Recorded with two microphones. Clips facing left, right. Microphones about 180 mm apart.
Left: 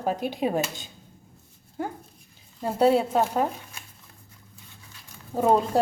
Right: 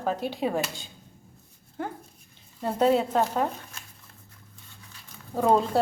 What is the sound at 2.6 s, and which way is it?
Speech, 10° left (ahead or behind).